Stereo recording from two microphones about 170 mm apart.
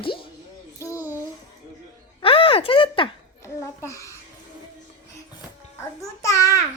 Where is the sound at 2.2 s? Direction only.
35° left (ahead or behind).